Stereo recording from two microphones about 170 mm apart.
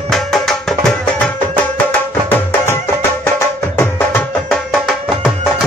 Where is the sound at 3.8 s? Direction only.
10° left (ahead or behind).